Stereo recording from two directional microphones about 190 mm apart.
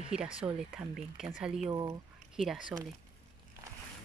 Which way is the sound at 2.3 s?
5° right (ahead or behind).